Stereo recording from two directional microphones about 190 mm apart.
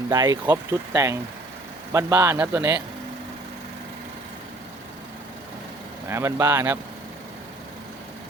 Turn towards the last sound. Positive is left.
turn(degrees=-15)  # may be behind; listen again after turning